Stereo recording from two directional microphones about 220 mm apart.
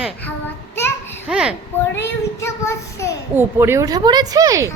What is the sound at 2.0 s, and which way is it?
Child singing, 10° left (ahead or behind).